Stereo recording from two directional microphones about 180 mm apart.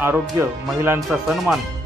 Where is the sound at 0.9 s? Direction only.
Centre (ahead or behind).